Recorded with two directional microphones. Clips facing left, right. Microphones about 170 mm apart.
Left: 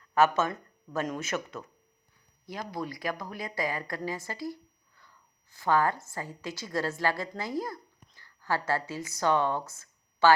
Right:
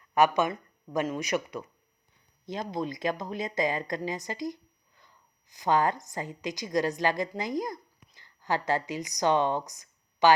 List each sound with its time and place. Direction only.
0.0 s a woman's voice: 15° right (ahead or behind)